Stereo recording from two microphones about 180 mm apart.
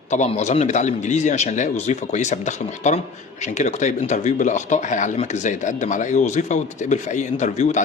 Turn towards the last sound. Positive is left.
turn(degrees=40)  # may be behind; listen again after turning